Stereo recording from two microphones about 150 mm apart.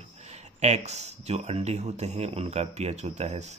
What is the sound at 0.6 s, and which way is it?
Speech, 50° right (ahead or behind).